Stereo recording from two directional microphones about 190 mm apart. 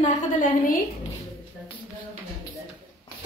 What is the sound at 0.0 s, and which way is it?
Speech, 45° left (ahead or behind).